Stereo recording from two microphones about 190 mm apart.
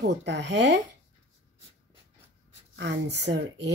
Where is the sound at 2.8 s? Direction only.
65° right (ahead or behind).